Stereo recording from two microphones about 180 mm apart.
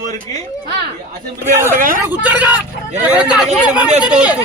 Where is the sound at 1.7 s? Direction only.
50° right (ahead or behind).